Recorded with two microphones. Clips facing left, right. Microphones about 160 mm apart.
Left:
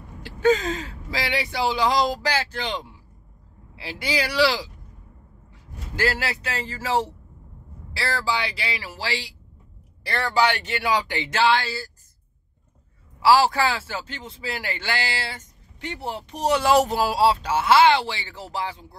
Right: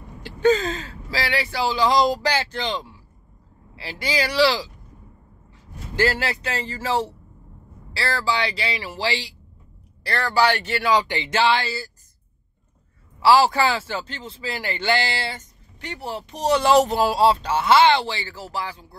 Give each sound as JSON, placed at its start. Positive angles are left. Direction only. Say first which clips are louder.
{"t": 0.2, "sound": "speech", "louder": "right 1 dB", "side_deg": 10}
{"t": 5.9, "sound": "speech", "louder": "right 3 dB", "side_deg": 5}
{"t": 10.0, "sound": "speech", "louder": "right 2 dB", "side_deg": 15}
{"t": 11.1, "sound": "speech", "louder": "right 1 dB", "side_deg": 0}
{"t": 13.2, "sound": "speech", "louder": "right 1 dB", "side_deg": 0}
{"t": 15.8, "sound": "speech", "louder": "even", "side_deg": 20}